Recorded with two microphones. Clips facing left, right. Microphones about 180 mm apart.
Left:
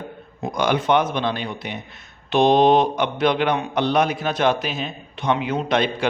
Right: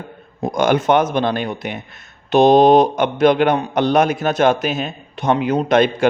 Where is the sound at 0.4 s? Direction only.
45° right (ahead or behind).